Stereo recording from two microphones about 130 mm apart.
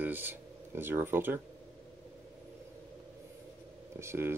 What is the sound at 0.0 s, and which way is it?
Speech, 15° right (ahead or behind).